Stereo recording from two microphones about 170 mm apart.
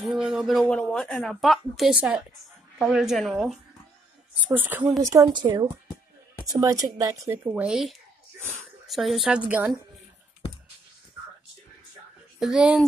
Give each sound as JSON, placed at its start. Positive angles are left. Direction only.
{"t": 0.0, "sound": "speech", "side_deg": -5}
{"t": 4.5, "sound": "speech", "side_deg": -10}
{"t": 7.4, "sound": "speech", "side_deg": -5}
{"t": 12.4, "sound": "speech", "side_deg": -5}